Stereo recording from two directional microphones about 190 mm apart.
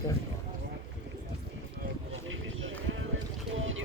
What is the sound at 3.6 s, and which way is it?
Boat, 90° right.